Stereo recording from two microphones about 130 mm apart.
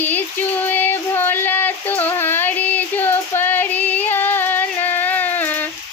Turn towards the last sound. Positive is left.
turn(degrees=15)  # may be behind; listen again after turning